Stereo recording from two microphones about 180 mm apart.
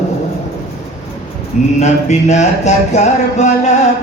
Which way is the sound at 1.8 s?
40° left (ahead or behind).